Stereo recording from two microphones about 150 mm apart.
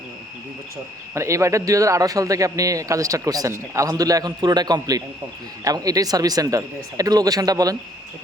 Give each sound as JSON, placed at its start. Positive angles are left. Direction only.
{"t": 1.1, "sound": "a man's voice", "side_deg": -20}